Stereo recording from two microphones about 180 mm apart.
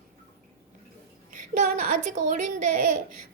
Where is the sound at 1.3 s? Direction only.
45° right (ahead or behind).